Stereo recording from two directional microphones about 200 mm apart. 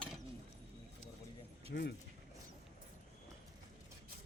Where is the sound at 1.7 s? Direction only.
50° left (ahead or behind).